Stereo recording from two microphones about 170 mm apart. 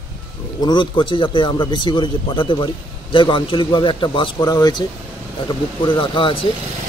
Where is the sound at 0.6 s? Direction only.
30° left (ahead or behind).